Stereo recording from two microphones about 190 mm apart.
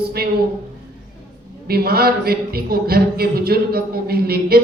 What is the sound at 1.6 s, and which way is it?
Speech, 55° right (ahead or behind).